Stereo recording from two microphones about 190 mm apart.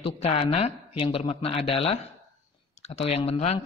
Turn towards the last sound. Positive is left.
turn(degrees=35)  # may be behind; listen again after turning